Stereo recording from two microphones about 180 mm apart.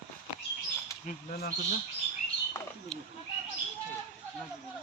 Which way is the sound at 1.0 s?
55° left (ahead or behind).